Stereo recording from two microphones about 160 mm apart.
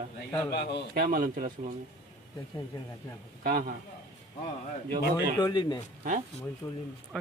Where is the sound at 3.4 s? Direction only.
65° right (ahead or behind).